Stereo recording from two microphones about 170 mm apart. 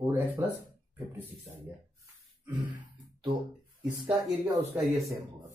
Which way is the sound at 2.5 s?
25° right (ahead or behind).